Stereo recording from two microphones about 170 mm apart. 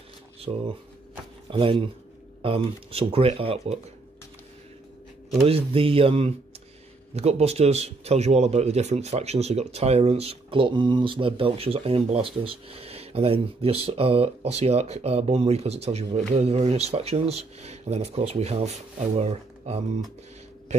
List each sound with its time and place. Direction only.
0.5 s speech: 25° right (ahead or behind)
5.5 s speech: 35° right (ahead or behind)